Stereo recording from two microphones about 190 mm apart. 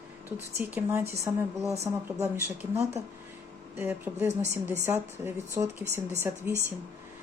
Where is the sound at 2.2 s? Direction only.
10° right (ahead or behind).